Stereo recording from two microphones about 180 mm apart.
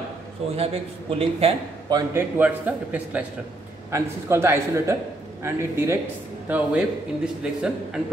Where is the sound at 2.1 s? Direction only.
10° right (ahead or behind).